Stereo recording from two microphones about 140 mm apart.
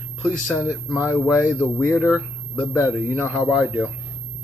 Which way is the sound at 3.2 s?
5° left (ahead or behind).